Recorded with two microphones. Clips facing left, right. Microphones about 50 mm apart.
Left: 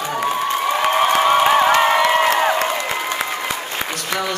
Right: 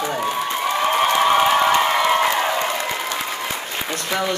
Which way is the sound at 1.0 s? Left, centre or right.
Centre.